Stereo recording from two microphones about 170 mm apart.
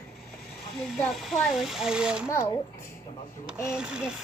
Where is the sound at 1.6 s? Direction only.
5° right (ahead or behind).